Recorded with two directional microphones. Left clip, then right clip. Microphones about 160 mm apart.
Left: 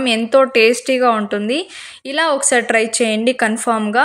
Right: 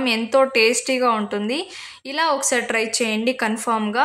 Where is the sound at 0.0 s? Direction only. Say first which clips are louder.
Left 4 dB; 20° left (ahead or behind).